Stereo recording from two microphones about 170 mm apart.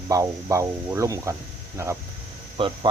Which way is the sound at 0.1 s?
20° right (ahead or behind).